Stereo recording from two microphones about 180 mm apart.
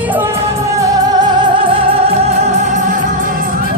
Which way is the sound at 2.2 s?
40° right (ahead or behind).